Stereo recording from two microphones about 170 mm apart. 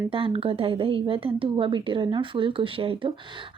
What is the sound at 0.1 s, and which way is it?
A woman's voice, 30° right (ahead or behind).